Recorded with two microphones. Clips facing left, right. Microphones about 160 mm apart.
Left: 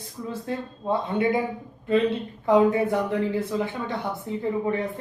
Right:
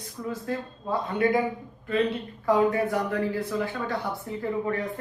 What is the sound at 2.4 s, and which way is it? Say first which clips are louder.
Speech: left 3 dB; 25° left (ahead or behind).